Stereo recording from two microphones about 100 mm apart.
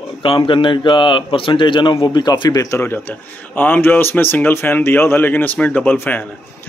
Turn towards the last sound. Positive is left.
turn(degrees=15)  # may be behind; listen again after turning